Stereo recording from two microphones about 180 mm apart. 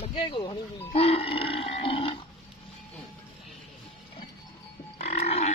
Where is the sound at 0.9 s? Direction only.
30° left (ahead or behind).